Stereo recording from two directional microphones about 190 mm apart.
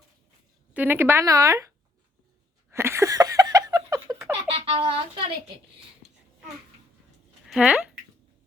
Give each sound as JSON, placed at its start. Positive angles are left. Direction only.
{"t": 0.7, "sound": "speech", "side_deg": -10}
{"t": 2.6, "sound": "a sound", "side_deg": -15}
{"t": 4.4, "sound": "a child's voice", "side_deg": -30}
{"t": 7.4, "sound": "speech", "side_deg": -5}